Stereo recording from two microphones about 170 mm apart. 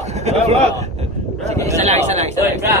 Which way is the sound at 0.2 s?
40° right (ahead or behind).